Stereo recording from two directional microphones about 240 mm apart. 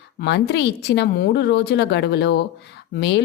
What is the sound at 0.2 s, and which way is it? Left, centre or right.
Speech, left.